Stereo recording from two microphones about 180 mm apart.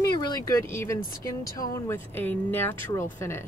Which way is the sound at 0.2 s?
20° left (ahead or behind).